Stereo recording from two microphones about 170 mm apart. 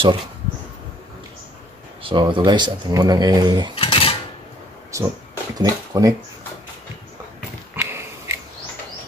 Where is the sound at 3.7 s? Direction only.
35° left (ahead or behind).